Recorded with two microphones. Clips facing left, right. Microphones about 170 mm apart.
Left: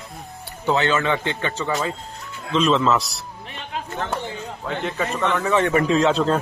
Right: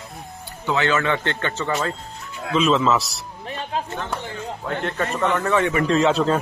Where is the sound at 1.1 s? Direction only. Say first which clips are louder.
Even; 10° left (ahead or behind).